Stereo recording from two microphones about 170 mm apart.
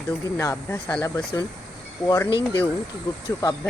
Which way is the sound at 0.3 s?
15° left (ahead or behind).